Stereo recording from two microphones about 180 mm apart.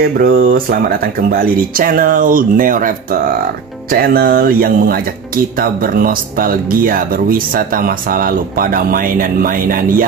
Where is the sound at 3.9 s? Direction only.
55° right (ahead or behind).